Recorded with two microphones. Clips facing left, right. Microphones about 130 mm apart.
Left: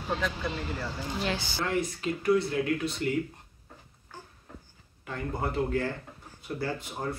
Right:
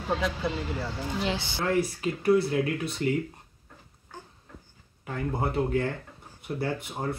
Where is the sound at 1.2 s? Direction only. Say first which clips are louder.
Right 1 dB; 25° right (ahead or behind).